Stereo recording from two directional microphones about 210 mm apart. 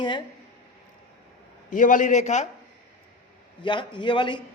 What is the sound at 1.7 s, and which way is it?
Speech, 40° left (ahead or behind).